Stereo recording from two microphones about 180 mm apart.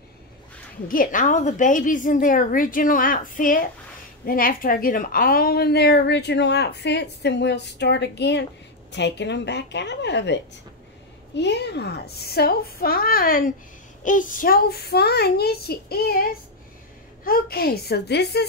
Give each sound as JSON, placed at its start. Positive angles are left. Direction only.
{"t": 0.8, "sound": "a woman's voice", "side_deg": 50}